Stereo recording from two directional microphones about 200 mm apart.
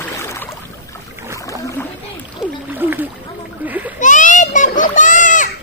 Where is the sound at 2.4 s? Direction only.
10° right (ahead or behind).